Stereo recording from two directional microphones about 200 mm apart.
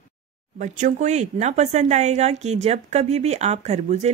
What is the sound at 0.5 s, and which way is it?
Speech, 35° right (ahead or behind).